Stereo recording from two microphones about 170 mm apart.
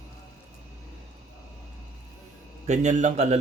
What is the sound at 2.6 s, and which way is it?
Speech, 45° right (ahead or behind).